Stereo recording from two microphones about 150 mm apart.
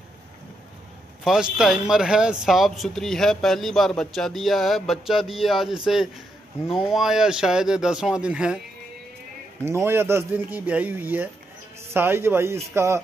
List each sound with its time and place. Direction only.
1.2 s speech: centre (ahead or behind)
9.7 s speech: 15° right (ahead or behind)